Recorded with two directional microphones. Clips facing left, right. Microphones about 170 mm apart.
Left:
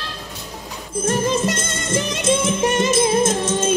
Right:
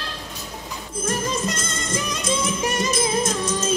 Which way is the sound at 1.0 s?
25° left (ahead or behind).